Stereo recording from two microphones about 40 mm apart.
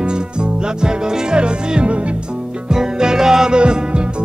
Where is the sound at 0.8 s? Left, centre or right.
Right.